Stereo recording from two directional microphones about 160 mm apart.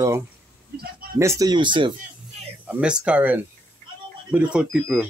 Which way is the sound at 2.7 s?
5° right (ahead or behind).